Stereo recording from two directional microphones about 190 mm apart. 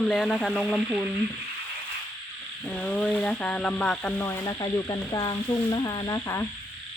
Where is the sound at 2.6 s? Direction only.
5° left (ahead or behind).